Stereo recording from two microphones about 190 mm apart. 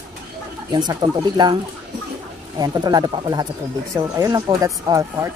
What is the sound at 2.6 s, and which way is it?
Speech, 20° right (ahead or behind).